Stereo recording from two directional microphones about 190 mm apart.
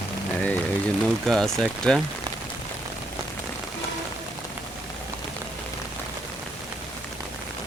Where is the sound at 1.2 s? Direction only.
Centre (ahead or behind).